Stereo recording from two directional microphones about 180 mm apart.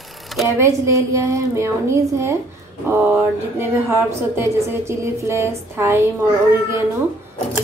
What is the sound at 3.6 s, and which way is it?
A woman's voice, 15° right (ahead or behind).